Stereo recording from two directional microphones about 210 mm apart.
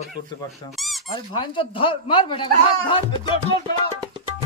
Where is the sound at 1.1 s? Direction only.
20° left (ahead or behind).